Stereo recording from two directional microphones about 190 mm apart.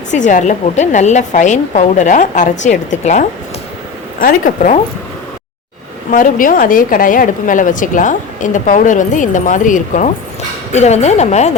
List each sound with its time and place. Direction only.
0.1 s a woman's voice: 40° left (ahead or behind)
6.1 s a woman's voice: 45° left (ahead or behind)